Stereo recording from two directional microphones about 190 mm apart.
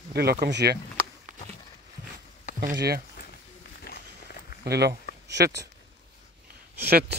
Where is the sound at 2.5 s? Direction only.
40° left (ahead or behind).